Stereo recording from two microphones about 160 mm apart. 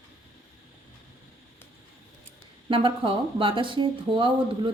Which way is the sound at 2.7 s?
30° right (ahead or behind).